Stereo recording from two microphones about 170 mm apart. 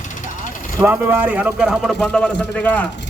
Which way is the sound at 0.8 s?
15° right (ahead or behind).